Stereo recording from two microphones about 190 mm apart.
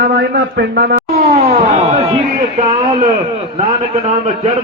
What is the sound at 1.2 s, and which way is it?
Speech, 35° right (ahead or behind).